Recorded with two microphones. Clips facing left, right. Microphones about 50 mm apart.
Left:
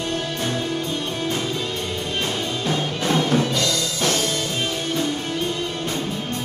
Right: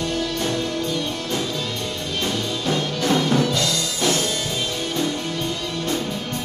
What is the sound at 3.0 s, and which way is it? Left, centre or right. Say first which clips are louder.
Music: right 1 dB; centre.